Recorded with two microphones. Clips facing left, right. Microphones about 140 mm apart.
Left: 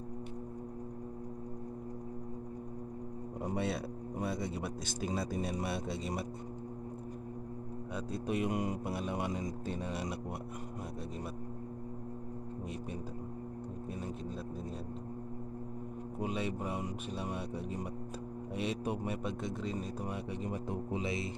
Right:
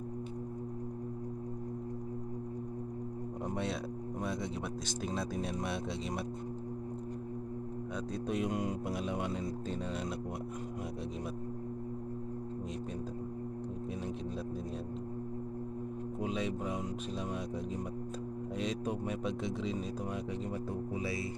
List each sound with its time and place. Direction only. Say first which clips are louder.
3.4 s speech: left 2 dB; 5° left (ahead or behind)
8.1 s speech: left 1 dB; 5° left (ahead or behind)
16.2 s speech: even; 5° left (ahead or behind)
18.5 s speech: left 1 dB; 10° left (ahead or behind)
20.4 s speech: even; 15° left (ahead or behind)
21.0 s music: even; 20° left (ahead or behind)